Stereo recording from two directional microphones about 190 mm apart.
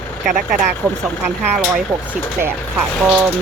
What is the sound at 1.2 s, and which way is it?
A woman's voice, 5° right (ahead or behind).